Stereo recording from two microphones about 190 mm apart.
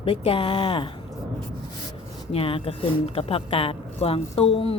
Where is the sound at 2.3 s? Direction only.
30° left (ahead or behind).